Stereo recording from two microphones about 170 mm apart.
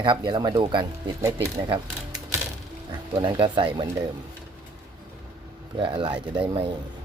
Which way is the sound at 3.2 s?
30° right (ahead or behind).